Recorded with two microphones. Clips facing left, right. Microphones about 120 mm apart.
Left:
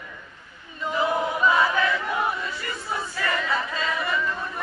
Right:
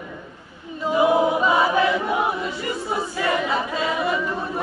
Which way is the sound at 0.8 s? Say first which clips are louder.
Right 7 dB; 15° right (ahead or behind).